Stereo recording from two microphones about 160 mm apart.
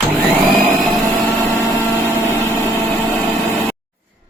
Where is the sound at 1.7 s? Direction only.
10° left (ahead or behind).